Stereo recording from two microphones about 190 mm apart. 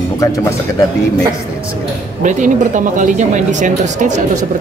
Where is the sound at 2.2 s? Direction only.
40° right (ahead or behind).